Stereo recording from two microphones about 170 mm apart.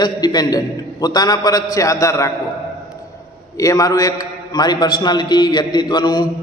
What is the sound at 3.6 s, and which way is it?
A man's voice, 20° left (ahead or behind).